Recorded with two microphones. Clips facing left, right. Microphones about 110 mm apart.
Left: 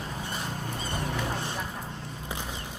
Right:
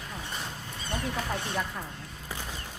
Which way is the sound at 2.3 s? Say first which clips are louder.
Left 2 dB; 20° left (ahead or behind).